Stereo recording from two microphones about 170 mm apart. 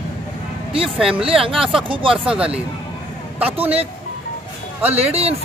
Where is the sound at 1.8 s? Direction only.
30° right (ahead or behind).